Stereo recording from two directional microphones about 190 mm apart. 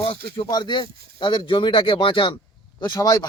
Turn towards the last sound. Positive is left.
turn(degrees=20)  # may be behind; listen again after turning